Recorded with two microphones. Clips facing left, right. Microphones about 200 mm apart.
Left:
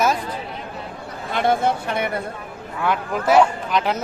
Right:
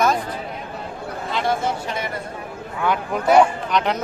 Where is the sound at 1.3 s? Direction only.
55° left (ahead or behind).